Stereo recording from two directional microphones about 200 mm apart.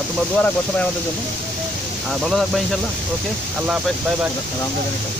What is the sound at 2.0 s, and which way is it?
Speech, centre (ahead or behind).